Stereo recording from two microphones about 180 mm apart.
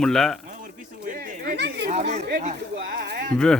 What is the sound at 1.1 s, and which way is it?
Chatter, 45° right (ahead or behind).